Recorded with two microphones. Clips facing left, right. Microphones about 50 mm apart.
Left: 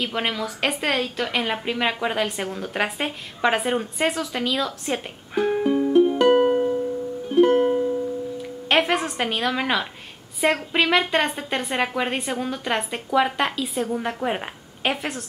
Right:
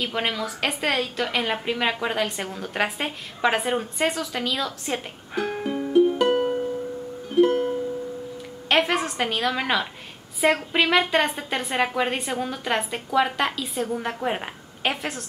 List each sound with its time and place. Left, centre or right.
0.0 s a woman's voice: centre
6.3 s music: left
7.2 s music: centre
8.6 s a woman's voice: centre